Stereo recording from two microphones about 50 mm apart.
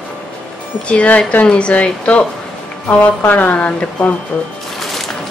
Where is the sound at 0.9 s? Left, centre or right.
Left.